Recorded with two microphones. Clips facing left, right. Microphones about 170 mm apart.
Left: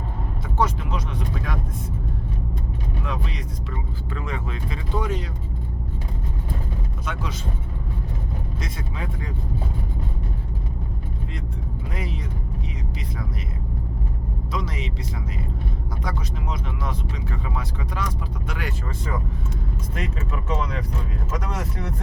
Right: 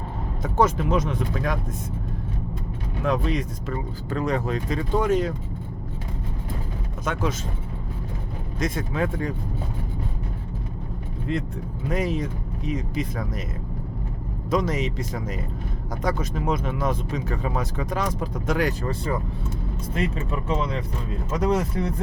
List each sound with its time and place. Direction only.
0.4 s speech: 50° right (ahead or behind)
3.0 s speech: 45° right (ahead or behind)
7.0 s speech: 45° right (ahead or behind)
8.5 s speech: 50° right (ahead or behind)
11.9 s speech: 45° right (ahead or behind)
14.5 s speech: 45° right (ahead or behind)
21.3 s speech: 30° right (ahead or behind)